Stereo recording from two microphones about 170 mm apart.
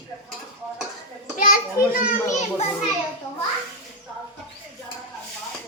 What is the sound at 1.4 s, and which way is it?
A child's voice, 50° left (ahead or behind).